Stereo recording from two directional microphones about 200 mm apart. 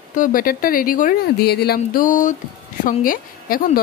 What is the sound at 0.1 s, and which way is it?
Speech, 40° left (ahead or behind).